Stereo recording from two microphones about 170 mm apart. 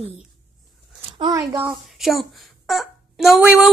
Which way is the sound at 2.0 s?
Centre (ahead or behind).